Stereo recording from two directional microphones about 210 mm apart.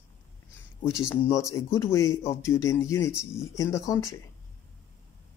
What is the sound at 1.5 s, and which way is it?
Speech, 15° left (ahead or behind).